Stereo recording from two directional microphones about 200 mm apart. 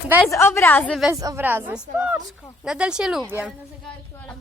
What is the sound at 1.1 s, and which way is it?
Speech, 15° right (ahead or behind).